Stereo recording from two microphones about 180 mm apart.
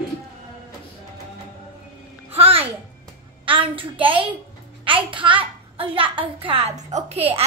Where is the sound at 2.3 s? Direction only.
35° right (ahead or behind).